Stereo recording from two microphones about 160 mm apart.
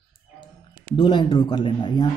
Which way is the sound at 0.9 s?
30° left (ahead or behind).